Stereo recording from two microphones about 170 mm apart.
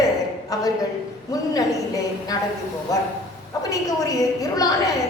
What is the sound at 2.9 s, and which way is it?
A woman's voice, 20° left (ahead or behind).